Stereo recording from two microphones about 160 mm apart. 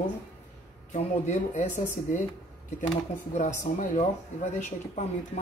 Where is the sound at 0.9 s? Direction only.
50° left (ahead or behind).